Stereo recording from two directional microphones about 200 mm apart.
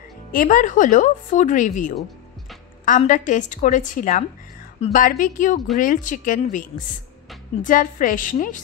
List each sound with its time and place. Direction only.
0.3 s speech: 45° left (ahead or behind)
7.6 s a woman's voice: 40° left (ahead or behind)